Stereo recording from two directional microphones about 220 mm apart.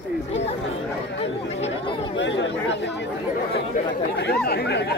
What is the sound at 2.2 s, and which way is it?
Chatter, 55° left (ahead or behind).